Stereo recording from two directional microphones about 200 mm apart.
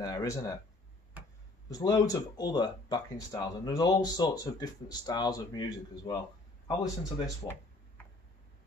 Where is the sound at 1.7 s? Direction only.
20° left (ahead or behind).